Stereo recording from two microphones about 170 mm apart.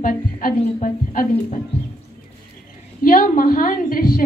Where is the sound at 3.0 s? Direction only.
55° left (ahead or behind).